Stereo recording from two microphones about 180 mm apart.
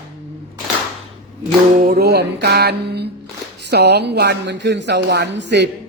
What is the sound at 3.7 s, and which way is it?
A woman's voice, 65° right (ahead or behind).